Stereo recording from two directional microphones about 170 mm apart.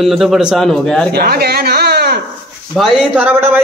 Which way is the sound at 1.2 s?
65° right (ahead or behind).